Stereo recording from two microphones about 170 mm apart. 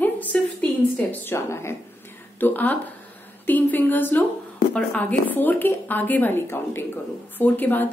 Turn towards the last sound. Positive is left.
turn(degrees=10)  # may be behind; listen again after turning